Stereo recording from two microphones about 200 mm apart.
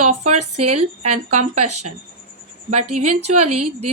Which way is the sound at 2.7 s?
35° right (ahead or behind).